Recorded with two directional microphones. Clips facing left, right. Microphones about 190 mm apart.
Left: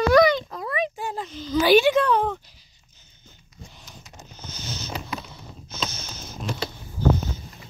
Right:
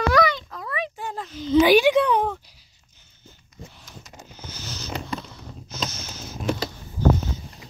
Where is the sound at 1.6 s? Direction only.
10° right (ahead or behind).